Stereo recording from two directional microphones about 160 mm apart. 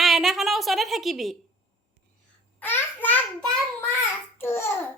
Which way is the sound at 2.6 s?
10° left (ahead or behind).